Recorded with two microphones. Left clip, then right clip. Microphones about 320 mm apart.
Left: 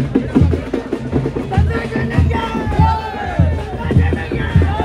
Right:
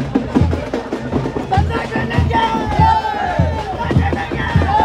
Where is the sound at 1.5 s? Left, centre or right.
Right.